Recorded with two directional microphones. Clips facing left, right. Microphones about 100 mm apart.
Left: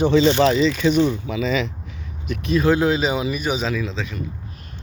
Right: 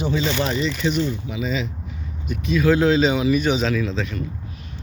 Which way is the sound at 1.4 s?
80° left.